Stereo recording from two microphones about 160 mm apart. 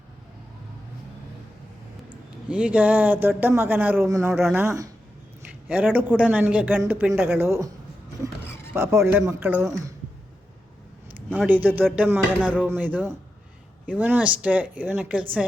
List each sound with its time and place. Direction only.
2.0 s speech: 10° right (ahead or behind)
8.7 s speech: 15° right (ahead or behind)
11.4 s speech: 10° right (ahead or behind)